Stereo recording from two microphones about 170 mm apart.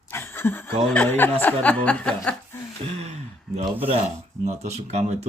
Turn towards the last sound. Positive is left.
turn(degrees=-40)  # may be behind; listen again after turning